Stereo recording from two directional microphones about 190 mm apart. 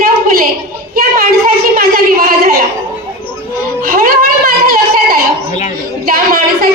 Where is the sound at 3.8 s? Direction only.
50° right (ahead or behind).